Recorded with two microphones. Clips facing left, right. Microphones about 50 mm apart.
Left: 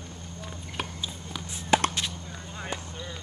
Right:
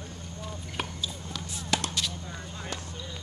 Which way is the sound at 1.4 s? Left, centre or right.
Left.